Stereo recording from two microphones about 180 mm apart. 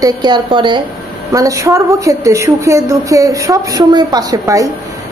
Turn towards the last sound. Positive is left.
turn(degrees=-20)  # may be behind; listen again after turning